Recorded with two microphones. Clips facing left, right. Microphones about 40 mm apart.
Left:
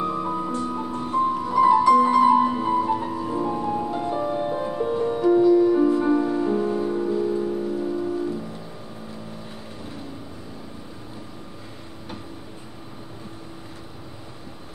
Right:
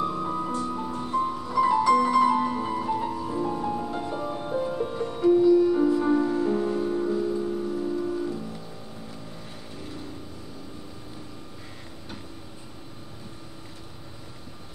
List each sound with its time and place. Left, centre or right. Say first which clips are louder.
0.0 s music: left 2 dB; left